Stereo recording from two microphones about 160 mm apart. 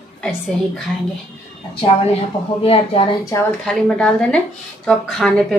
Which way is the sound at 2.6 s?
35° left (ahead or behind).